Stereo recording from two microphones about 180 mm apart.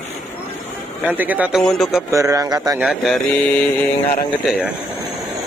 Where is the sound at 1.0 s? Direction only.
10° right (ahead or behind).